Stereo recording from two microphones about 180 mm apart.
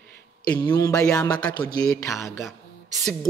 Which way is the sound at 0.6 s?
20° left (ahead or behind).